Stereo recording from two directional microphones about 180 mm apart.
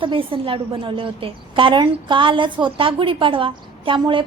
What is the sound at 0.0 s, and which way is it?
A woman's voice, 30° right (ahead or behind).